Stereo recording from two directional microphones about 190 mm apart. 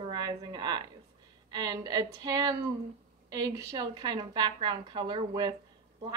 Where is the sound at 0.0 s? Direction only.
20° right (ahead or behind).